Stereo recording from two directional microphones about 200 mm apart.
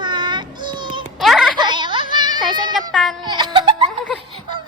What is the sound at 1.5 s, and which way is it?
Music, 20° right (ahead or behind).